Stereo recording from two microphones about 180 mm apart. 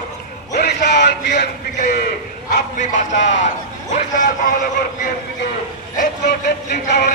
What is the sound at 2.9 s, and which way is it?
Speech, 45° left (ahead or behind).